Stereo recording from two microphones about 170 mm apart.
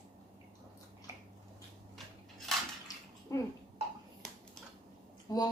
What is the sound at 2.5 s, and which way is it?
Dishes, centre (ahead or behind).